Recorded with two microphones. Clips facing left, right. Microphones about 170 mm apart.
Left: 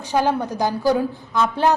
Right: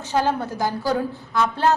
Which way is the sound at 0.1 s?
15° left (ahead or behind).